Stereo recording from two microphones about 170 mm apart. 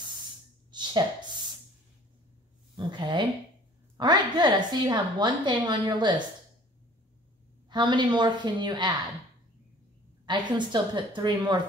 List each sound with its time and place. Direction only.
0.7 s a sound: 25° right (ahead or behind)
2.7 s a woman's voice: 25° right (ahead or behind)
7.7 s a woman's voice: 25° right (ahead or behind)
10.2 s a woman's voice: 25° right (ahead or behind)